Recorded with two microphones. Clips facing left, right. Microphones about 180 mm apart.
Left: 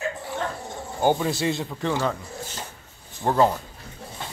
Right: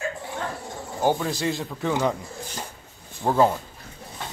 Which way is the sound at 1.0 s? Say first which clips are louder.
Left 1 dB; 5° left (ahead or behind).